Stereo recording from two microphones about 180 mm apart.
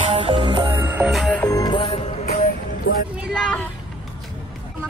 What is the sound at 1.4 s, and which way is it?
Music, 20° left (ahead or behind).